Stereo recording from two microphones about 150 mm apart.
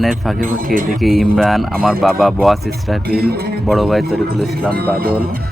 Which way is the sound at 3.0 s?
90° right.